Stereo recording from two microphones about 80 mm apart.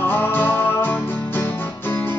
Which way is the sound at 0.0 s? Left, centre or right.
Left.